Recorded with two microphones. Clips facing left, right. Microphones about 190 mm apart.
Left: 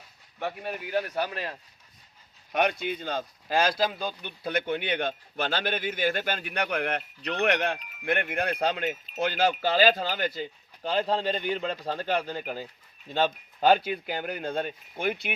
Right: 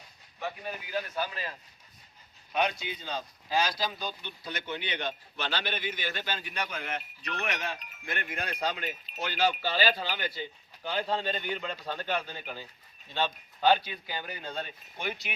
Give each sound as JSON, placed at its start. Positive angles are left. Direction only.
{"t": 0.3, "sound": "a man's voice", "side_deg": 60}